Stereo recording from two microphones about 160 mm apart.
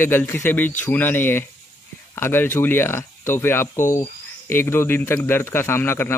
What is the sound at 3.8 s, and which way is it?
Speech, 55° left (ahead or behind).